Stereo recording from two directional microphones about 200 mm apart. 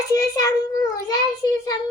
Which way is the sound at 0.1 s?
15° left (ahead or behind).